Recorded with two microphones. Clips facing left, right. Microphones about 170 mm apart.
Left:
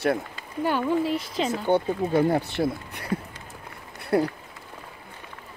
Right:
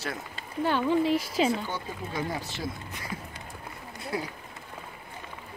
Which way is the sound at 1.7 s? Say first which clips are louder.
Left 13 dB; 60° left (ahead or behind).